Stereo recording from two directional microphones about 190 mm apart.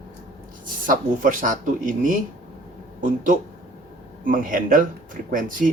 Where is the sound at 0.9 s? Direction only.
45° right (ahead or behind).